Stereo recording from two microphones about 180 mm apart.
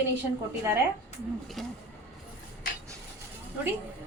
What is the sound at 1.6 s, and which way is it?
Speech, centre (ahead or behind).